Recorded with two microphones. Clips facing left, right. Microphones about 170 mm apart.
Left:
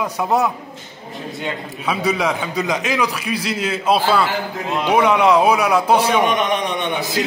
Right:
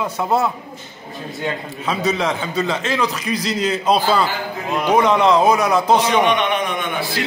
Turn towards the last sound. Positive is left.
turn(degrees=35)  # may be behind; listen again after turning